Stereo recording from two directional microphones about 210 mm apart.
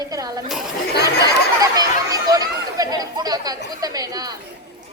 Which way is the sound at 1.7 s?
15° right (ahead or behind).